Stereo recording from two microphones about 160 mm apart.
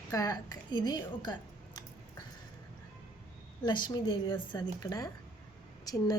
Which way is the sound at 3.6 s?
25° left (ahead or behind).